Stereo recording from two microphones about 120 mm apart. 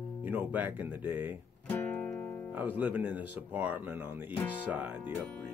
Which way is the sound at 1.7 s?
10° left (ahead or behind).